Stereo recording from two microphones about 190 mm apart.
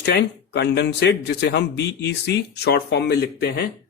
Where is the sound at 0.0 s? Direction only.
60° left (ahead or behind).